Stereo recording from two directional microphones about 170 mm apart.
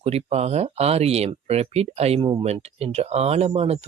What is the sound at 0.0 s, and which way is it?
Speech, 40° right (ahead or behind).